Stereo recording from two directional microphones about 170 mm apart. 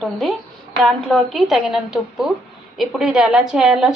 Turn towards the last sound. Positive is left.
turn(degrees=-5)  # may be behind; listen again after turning